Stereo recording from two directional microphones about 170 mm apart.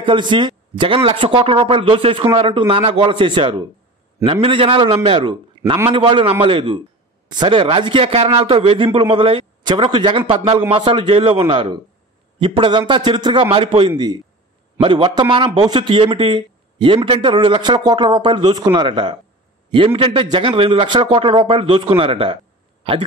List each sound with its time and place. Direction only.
0.0 s a man's voice: 30° right (ahead or behind)